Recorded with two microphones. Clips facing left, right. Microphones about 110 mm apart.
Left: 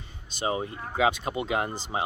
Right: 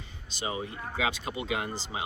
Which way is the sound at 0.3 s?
40° left (ahead or behind).